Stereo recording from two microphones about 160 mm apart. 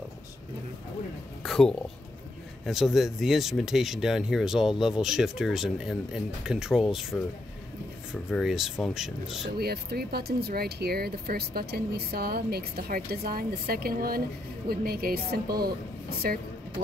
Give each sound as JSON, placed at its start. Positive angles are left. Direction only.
{"t": 1.4, "sound": "speech", "side_deg": 0}
{"t": 9.6, "sound": "speech", "side_deg": -75}